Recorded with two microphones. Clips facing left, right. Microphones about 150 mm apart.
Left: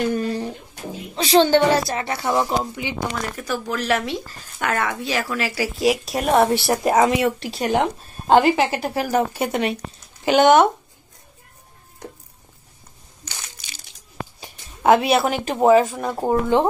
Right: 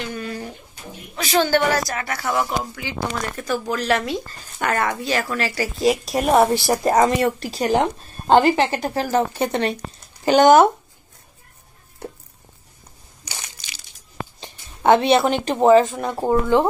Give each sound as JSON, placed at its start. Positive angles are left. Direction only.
{"t": 0.0, "sound": "a sound", "side_deg": 40}
{"t": 1.1, "sound": "a woman's voice", "side_deg": 30}
{"t": 3.2, "sound": "speech", "side_deg": 0}
{"t": 13.2, "sound": "crushing", "side_deg": -10}
{"t": 14.4, "sound": "speech", "side_deg": 5}
{"t": 16.3, "sound": "a woman's voice", "side_deg": 20}